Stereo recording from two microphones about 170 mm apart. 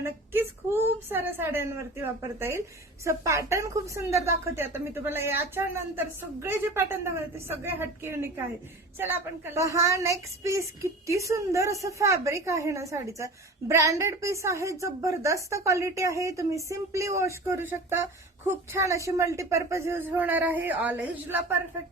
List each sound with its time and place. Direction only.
0.0 s a woman's voice: 15° right (ahead or behind)